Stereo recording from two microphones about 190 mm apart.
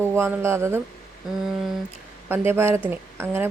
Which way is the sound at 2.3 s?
10° right (ahead or behind).